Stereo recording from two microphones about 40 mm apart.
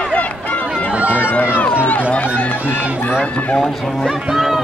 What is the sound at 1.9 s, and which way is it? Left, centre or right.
Run, left.